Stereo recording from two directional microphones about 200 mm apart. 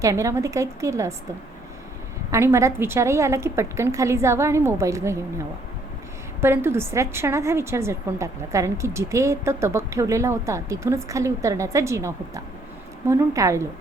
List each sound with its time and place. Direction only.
0.0 s a woman's voice: 15° right (ahead or behind)
2.3 s a woman's voice: 15° right (ahead or behind)
6.4 s a woman's voice: 10° right (ahead or behind)